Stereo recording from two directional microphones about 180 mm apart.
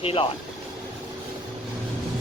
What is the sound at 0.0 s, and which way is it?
Speech, 30° left (ahead or behind).